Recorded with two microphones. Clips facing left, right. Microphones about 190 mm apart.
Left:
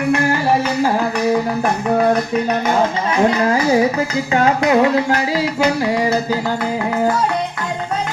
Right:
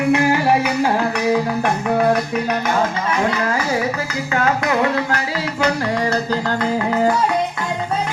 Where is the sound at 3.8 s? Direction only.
20° left (ahead or behind); by 7.1 s centre (ahead or behind).